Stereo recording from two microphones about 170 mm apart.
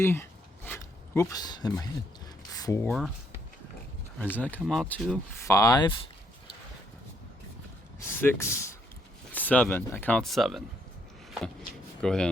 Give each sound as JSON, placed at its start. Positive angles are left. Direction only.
{"t": 0.0, "sound": "a sound", "side_deg": 15}
{"t": 4.2, "sound": "speech", "side_deg": 10}
{"t": 5.4, "sound": "speech", "side_deg": 20}
{"t": 7.9, "sound": "speech", "side_deg": 15}
{"t": 12.0, "sound": "speech", "side_deg": 5}